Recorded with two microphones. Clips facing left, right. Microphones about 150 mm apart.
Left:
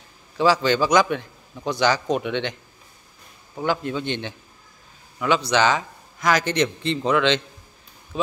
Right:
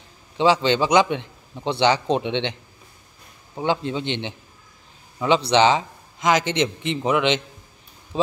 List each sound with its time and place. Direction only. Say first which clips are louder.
0.4 s a man's voice: right 1 dB; 25° right (ahead or behind)
3.5 s a man's voice: right 1 dB; 20° right (ahead or behind)